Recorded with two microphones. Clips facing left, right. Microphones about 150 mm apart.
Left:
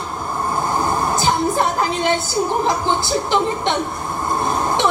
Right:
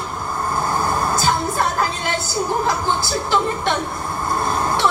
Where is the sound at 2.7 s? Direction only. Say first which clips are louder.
Left 2 dB; 20° left (ahead or behind).